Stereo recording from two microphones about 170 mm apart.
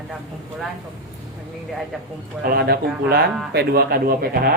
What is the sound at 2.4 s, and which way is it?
Speech, 65° right (ahead or behind).